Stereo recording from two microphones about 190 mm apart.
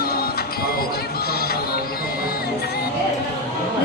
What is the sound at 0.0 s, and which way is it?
Music, 55° left (ahead or behind).